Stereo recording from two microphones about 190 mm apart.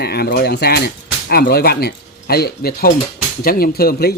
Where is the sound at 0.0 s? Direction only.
55° left (ahead or behind).